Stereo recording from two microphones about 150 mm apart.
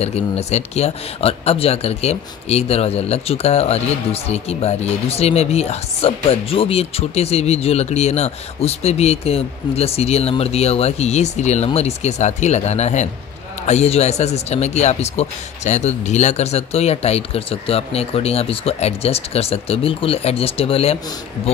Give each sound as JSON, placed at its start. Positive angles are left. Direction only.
{"t": 0.0, "sound": "speech", "side_deg": 45}